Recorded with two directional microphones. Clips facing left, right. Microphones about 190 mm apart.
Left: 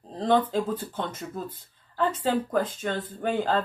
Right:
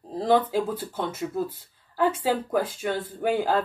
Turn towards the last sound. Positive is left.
turn(degrees=-10)  # may be behind; listen again after turning